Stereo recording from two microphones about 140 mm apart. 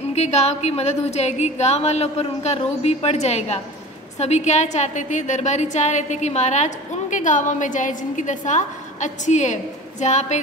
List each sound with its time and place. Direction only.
0.1 s a woman's voice: 50° left (ahead or behind)